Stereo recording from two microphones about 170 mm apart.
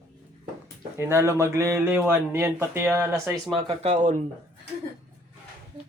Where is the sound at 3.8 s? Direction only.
45° right (ahead or behind).